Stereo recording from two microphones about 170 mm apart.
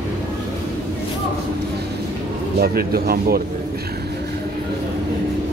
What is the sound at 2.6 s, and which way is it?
Speech, 60° right (ahead or behind).